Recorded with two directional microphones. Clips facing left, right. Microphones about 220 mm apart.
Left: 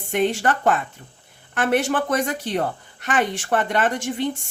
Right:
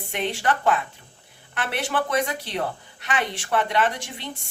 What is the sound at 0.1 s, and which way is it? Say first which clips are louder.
Speech: left 5 dB; 45° left (ahead or behind).